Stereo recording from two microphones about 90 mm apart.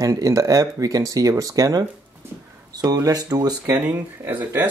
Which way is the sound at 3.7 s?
20° right (ahead or behind).